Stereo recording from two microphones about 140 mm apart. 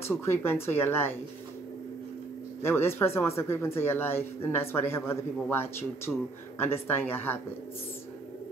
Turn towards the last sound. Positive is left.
turn(degrees=15)  # may be behind; listen again after turning